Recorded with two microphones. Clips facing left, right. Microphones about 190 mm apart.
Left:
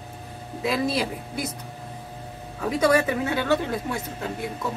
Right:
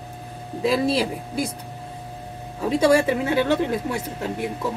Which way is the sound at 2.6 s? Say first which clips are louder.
Right 3 dB; 30° right (ahead or behind).